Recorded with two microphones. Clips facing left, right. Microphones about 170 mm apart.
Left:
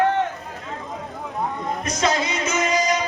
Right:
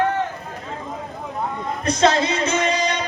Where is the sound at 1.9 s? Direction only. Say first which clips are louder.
Right 6 dB; 30° right (ahead or behind).